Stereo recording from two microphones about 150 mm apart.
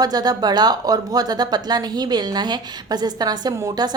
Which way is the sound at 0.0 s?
25° right (ahead or behind).